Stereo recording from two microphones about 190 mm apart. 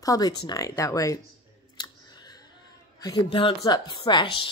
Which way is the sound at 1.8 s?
20° left (ahead or behind).